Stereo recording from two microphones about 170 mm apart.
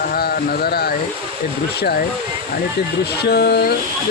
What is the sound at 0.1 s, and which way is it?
Speech, 65° left (ahead or behind).